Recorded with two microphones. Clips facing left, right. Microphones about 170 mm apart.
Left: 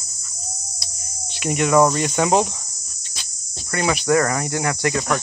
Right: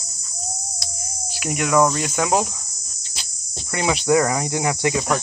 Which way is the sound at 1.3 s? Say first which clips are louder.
Left 2 dB; 5° right (ahead or behind).